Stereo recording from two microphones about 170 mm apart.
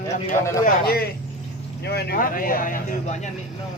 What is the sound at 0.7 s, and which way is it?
Speech, 65° left (ahead or behind).